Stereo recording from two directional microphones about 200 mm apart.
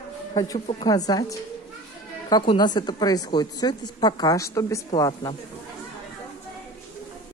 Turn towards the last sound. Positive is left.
turn(degrees=20)  # may be behind; listen again after turning